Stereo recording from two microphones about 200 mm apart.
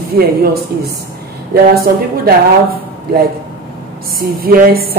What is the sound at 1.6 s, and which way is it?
Speech, 45° right (ahead or behind).